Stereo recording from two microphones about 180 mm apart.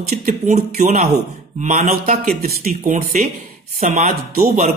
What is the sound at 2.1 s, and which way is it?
Speech, 55° right (ahead or behind).